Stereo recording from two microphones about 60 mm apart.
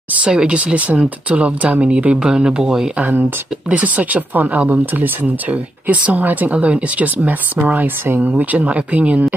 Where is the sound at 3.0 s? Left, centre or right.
Right.